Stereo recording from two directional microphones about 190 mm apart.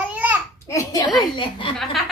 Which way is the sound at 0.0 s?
10° right (ahead or behind).